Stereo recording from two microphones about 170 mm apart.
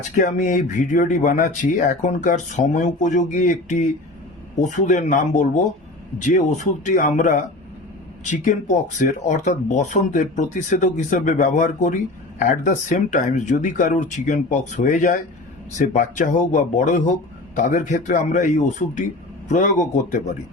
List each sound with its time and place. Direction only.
0.2 s speech: 50° left (ahead or behind)